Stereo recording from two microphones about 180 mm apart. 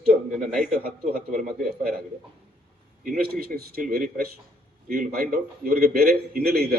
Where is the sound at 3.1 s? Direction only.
55° right (ahead or behind).